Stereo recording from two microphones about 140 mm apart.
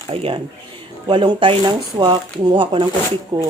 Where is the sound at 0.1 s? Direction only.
40° right (ahead or behind).